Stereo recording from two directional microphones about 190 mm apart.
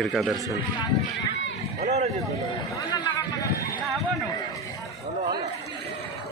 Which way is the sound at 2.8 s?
20° left (ahead or behind).